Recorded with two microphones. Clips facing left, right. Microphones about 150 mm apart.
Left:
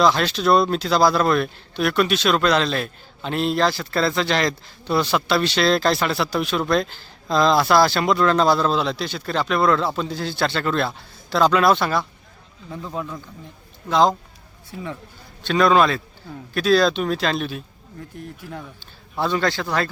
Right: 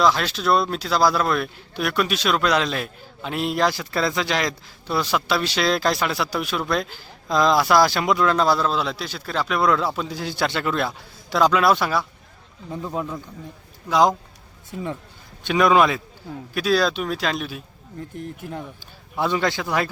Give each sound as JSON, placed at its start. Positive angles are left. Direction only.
{"t": 0.0, "sound": "a man's voice", "side_deg": -5}
{"t": 12.7, "sound": "a man's voice", "side_deg": -15}
{"t": 15.4, "sound": "a man's voice", "side_deg": -15}
{"t": 19.1, "sound": "a man's voice", "side_deg": -15}